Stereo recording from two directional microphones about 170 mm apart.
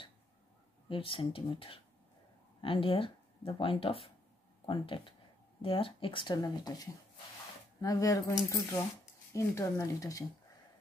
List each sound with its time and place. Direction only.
0.8 s speech: 30° left (ahead or behind)